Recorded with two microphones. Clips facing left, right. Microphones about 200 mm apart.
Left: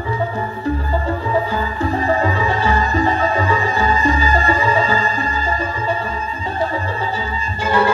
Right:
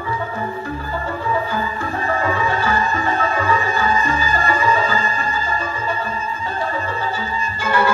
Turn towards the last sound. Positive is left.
turn(degrees=30)  # may be behind; listen again after turning